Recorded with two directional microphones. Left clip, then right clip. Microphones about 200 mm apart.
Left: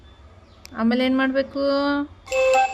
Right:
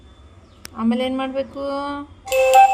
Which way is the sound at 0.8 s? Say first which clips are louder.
Left 1 dB; 30° left (ahead or behind).